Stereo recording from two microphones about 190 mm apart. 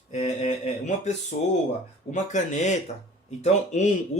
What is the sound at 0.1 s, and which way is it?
Mantra, 35° left (ahead or behind).